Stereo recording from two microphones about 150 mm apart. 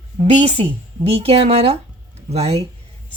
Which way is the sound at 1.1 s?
45° right (ahead or behind).